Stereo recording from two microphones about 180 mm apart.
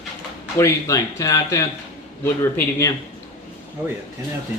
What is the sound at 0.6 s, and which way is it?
Speech, 20° left (ahead or behind).